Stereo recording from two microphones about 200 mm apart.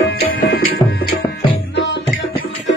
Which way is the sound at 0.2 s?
55° left (ahead or behind).